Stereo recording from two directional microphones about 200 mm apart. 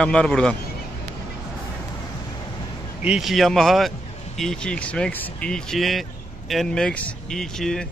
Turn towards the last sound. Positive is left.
turn(degrees=5)  # may be behind; listen again after turning